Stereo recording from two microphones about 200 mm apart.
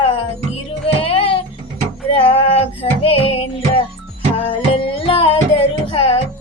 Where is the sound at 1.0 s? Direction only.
30° left (ahead or behind).